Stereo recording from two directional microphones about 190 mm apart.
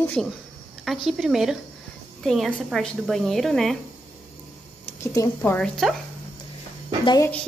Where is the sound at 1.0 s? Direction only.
Centre (ahead or behind).